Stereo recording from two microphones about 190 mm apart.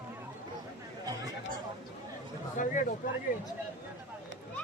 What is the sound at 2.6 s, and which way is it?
Speech, 45° left (ahead or behind).